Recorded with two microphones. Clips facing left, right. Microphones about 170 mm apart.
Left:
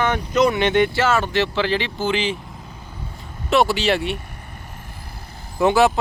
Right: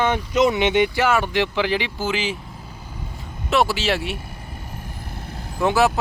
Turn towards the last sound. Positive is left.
turn(degrees=0)  # may be behind; listen again after turning